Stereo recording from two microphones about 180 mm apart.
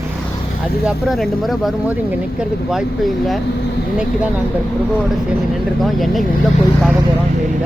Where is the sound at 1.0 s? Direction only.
Centre (ahead or behind).